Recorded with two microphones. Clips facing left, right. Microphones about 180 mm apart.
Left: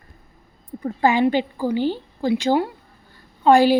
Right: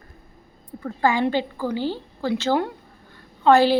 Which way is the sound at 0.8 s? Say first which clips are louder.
Left 3 dB; 20° left (ahead or behind).